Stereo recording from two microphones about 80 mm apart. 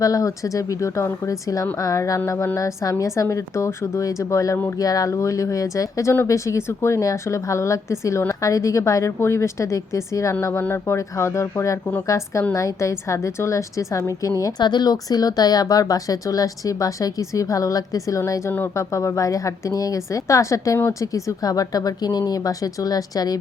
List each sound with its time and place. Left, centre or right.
0.0 s a woman's voice: left
10.4 s a woman's voice: left
14.6 s a woman's voice: left